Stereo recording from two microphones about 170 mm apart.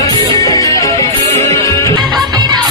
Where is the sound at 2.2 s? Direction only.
25° right (ahead or behind).